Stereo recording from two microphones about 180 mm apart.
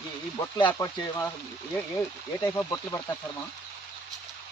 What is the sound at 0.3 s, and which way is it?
Speech, 25° left (ahead or behind).